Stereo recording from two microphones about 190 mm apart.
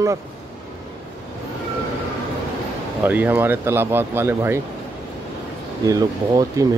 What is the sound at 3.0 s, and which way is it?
Speech, 10° right (ahead or behind).